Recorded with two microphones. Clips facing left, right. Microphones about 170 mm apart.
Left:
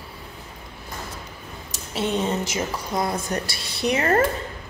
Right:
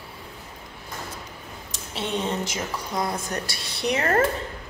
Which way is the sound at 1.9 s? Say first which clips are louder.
Left 4 dB; 5° left (ahead or behind).